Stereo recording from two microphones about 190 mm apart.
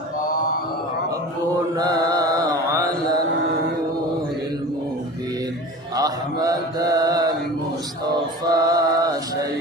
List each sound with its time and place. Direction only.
1.8 s mantra: 20° right (ahead or behind)
5.9 s mantra: 20° right (ahead or behind)
8.5 s mantra: 20° right (ahead or behind)